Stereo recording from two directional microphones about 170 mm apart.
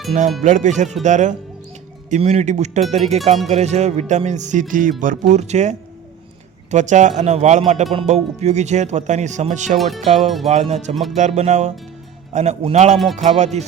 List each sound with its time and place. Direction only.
0.4 s speech: 45° right (ahead or behind)
9.7 s speech: centre (ahead or behind)
10.5 s speech: 40° right (ahead or behind)
10.9 s speech: centre (ahead or behind)
11.2 s speech: 40° right (ahead or behind)